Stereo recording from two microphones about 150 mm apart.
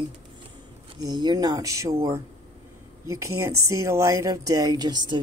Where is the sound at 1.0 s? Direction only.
30° right (ahead or behind).